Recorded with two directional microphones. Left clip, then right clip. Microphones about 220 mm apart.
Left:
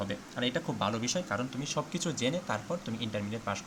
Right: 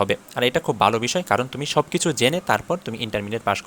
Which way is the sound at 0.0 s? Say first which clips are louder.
Right 13 dB; 40° right (ahead or behind).